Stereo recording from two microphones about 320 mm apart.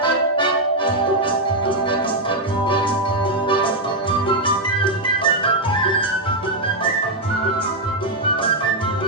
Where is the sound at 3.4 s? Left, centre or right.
Centre.